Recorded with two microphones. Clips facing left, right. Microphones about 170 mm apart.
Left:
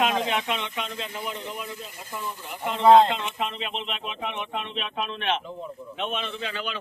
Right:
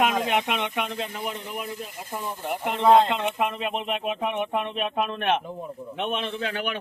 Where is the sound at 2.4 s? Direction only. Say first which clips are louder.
Left 1 dB; 60° right (ahead or behind).